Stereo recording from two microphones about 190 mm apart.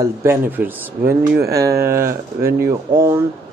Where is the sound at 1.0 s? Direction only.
55° right (ahead or behind).